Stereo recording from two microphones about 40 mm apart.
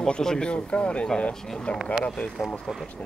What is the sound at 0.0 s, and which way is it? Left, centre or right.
Speech, centre.